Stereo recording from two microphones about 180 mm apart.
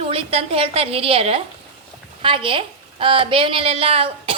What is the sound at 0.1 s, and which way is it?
A woman's voice, 30° right (ahead or behind).